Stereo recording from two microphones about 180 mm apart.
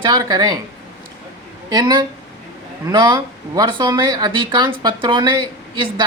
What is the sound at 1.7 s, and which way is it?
Speech, 25° right (ahead or behind).